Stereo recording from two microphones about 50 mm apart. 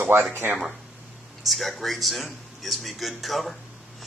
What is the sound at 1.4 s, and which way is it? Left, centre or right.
A man's voice, centre.